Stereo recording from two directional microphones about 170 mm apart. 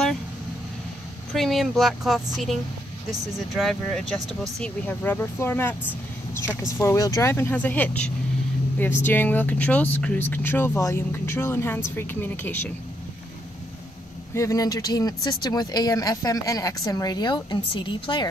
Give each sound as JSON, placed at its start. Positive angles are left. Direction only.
{"t": 1.3, "sound": "speech", "side_deg": 0}
{"t": 14.3, "sound": "speech", "side_deg": 20}